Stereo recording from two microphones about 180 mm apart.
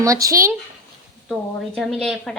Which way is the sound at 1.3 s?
Centre (ahead or behind).